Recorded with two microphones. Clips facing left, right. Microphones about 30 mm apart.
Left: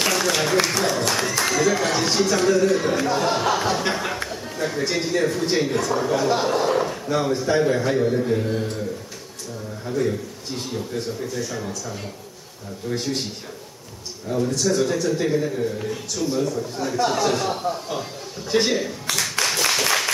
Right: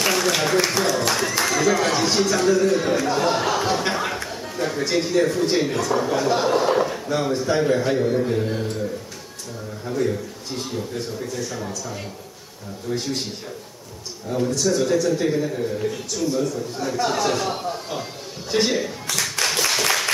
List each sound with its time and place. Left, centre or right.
0.0 s a man's voice: centre
9.8 s a man's voice: centre
12.9 s a man's voice: centre
14.5 s a man's voice: centre
19.1 s a sound: centre